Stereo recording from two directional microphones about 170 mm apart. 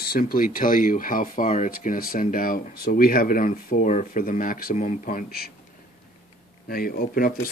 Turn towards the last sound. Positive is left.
turn(degrees=60)  # may be behind; listen again after turning